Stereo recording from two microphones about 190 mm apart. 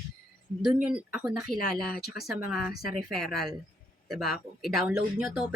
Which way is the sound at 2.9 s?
Centre (ahead or behind).